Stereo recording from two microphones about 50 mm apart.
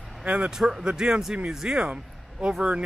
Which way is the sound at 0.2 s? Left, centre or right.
Right.